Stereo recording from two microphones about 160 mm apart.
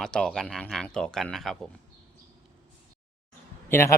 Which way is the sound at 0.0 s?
5° left (ahead or behind).